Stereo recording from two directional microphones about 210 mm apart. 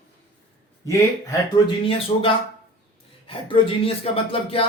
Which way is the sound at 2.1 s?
25° left (ahead or behind).